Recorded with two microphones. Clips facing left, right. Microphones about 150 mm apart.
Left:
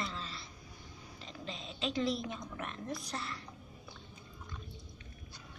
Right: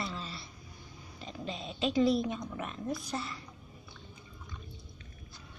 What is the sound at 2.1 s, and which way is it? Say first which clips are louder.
A woman's voice: right 7 dB; 10° right (ahead or behind).